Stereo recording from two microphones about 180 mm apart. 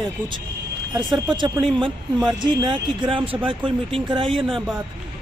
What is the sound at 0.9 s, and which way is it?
Speech, 25° right (ahead or behind).